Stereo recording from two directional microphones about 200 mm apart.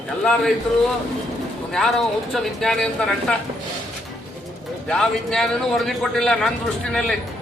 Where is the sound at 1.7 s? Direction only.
Centre (ahead or behind).